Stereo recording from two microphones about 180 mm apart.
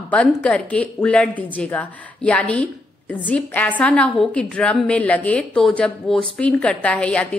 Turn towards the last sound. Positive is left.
turn(degrees=5)  # may be behind; listen again after turning